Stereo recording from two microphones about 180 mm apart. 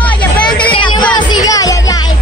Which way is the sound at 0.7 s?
30° left (ahead or behind).